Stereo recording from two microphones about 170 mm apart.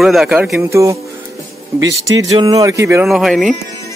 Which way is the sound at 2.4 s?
20° right (ahead or behind).